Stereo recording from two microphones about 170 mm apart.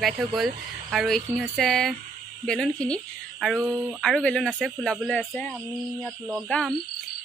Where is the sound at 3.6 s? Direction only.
15° right (ahead or behind).